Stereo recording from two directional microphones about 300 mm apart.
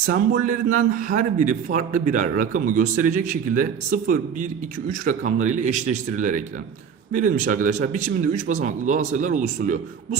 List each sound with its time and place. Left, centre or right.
0.0 s a man's voice: right